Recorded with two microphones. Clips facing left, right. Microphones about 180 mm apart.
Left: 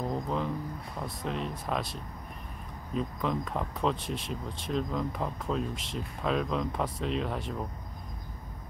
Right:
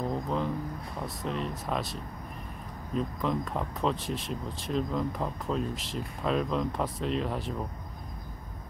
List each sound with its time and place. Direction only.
0.1 s speech: centre (ahead or behind)